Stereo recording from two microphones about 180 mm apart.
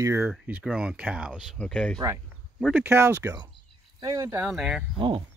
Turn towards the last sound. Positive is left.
turn(degrees=-25)  # may be behind; listen again after turning